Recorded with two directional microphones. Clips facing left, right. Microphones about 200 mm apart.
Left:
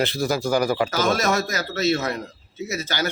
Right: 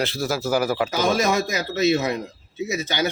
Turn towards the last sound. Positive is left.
turn(degrees=-15)  # may be behind; listen again after turning